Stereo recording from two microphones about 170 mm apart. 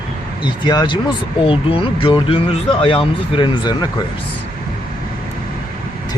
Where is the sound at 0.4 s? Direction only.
25° left (ahead or behind).